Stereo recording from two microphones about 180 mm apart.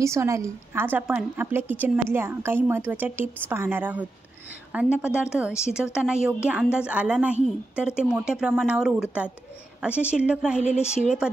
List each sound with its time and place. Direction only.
0.0 s a woman's voice: 15° right (ahead or behind)